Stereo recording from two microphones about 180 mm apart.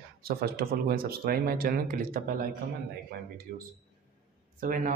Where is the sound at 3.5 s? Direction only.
50° right (ahead or behind).